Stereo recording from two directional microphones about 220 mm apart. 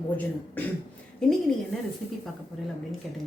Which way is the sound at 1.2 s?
Centre (ahead or behind).